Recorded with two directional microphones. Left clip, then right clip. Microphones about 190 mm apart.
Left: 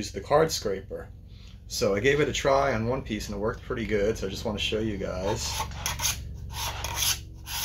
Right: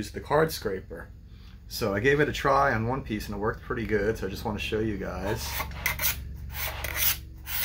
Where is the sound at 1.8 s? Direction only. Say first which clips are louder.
Left 1 dB; 50° right (ahead or behind).